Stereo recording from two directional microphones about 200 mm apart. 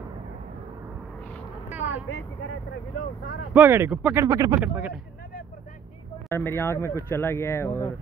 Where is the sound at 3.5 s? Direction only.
10° right (ahead or behind).